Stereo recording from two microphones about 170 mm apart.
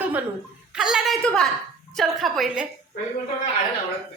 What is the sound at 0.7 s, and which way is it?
A woman's voice, 5° right (ahead or behind).